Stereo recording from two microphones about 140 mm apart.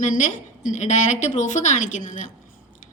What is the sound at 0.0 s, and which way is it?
A woman's voice, 60° left (ahead or behind).